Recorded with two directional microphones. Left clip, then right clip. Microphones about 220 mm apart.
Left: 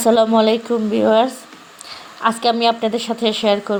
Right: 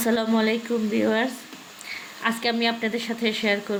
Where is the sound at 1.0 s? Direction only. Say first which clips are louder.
Left 11 dB; 5° right (ahead or behind).